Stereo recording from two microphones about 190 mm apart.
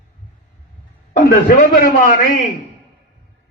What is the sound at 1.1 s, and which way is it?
A man's voice, 45° left (ahead or behind).